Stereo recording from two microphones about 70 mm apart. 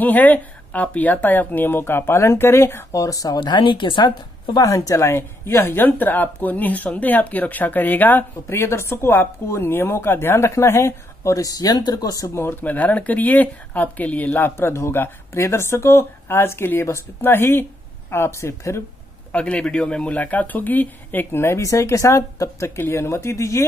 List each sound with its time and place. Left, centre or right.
0.0 s speech: left
3.4 s speech: left
4.6 s speech: left
8.5 s speech: left
12.6 s speech: left
19.3 s speech: centre; by 23.6 s left